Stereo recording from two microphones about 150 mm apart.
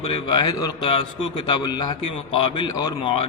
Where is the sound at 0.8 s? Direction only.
35° left (ahead or behind).